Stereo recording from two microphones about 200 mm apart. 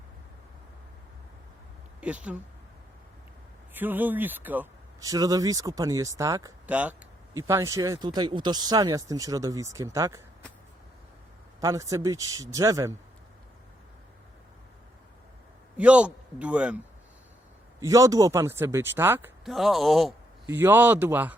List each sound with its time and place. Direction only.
2.0 s speech: 5° right (ahead or behind)
3.8 s speech: 10° right (ahead or behind)
11.6 s speech: 15° right (ahead or behind)
15.8 s speech: 5° right (ahead or behind)
17.7 s speech: 15° right (ahead or behind)
19.5 s speech: centre (ahead or behind)
20.5 s speech: 10° right (ahead or behind)